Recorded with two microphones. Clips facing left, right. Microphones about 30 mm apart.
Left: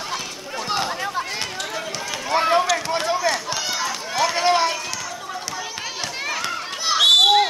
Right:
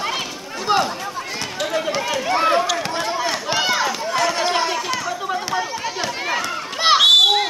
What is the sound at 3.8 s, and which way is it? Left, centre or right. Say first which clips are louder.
Run: right 3 dB; centre.